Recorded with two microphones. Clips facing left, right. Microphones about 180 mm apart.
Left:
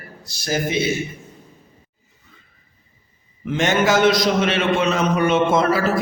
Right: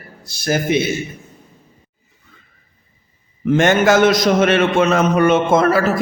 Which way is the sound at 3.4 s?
50° right (ahead or behind).